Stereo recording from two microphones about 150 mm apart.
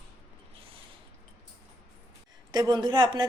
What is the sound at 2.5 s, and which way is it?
Speech, 30° right (ahead or behind).